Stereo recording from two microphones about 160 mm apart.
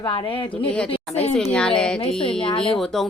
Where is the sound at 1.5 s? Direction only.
5° left (ahead or behind).